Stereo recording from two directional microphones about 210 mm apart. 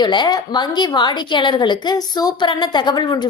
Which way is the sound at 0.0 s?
20° left (ahead or behind).